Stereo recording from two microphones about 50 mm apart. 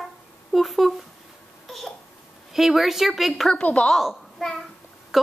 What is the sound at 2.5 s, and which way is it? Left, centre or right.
Speech, centre.